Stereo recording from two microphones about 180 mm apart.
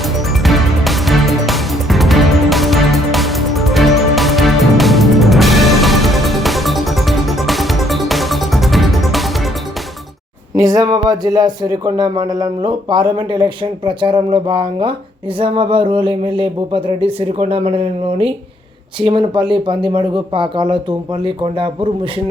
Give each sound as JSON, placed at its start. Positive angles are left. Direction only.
{"t": 0.0, "sound": "music", "side_deg": 0}
{"t": 10.6, "sound": "speech", "side_deg": -20}